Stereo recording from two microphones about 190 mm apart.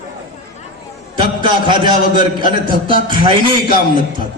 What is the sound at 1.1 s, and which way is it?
A man's voice, 25° right (ahead or behind).